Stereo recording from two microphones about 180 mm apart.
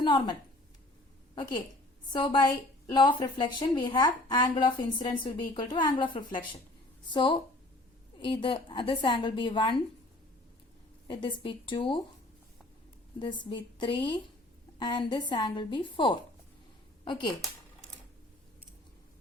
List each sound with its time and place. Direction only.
0.0 s a woman's voice: 25° left (ahead or behind)
2.1 s a woman's voice: 25° left (ahead or behind)
11.1 s a woman's voice: 30° left (ahead or behind)
13.1 s a woman's voice: 25° left (ahead or behind)